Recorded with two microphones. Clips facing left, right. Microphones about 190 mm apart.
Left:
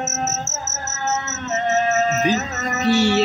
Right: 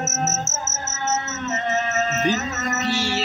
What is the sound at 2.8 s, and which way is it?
Music, 60° left (ahead or behind).